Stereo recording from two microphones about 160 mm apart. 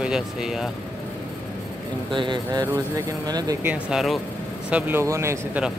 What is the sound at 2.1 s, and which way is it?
Speech, 30° right (ahead or behind).